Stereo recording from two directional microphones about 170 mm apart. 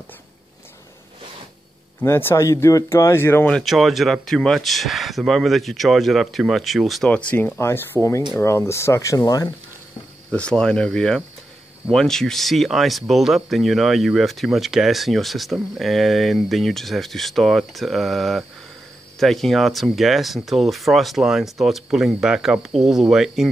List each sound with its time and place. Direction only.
2.0 s speech: 15° left (ahead or behind)
10.3 s speech: 5° left (ahead or behind)